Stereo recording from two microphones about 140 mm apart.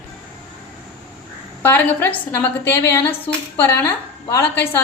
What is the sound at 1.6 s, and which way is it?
A woman's voice, 15° left (ahead or behind).